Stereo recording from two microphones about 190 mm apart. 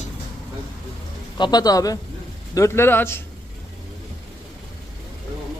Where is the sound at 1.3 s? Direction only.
20° left (ahead or behind).